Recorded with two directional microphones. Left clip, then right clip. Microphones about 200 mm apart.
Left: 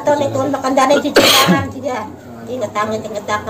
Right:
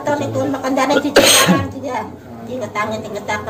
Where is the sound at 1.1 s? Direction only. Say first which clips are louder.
Left 1 dB; centre (ahead or behind).